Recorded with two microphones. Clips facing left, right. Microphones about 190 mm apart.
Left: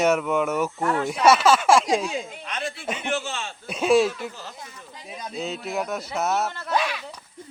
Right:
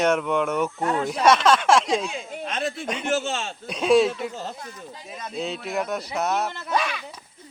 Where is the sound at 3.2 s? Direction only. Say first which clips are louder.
Right 4 dB; 30° right (ahead or behind).